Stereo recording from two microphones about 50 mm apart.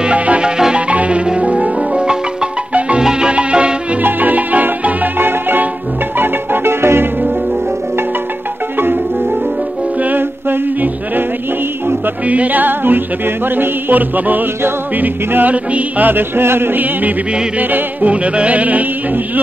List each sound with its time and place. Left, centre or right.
0.0 s music: right
4.0 s music: right
10.0 s a capella: right
12.3 s music: right
18.1 s music: right